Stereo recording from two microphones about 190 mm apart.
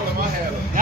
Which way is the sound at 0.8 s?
45° right (ahead or behind).